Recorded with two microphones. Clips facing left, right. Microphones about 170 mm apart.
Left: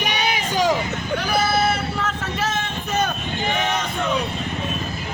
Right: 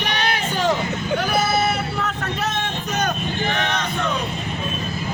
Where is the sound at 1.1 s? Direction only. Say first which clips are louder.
Even; centre (ahead or behind).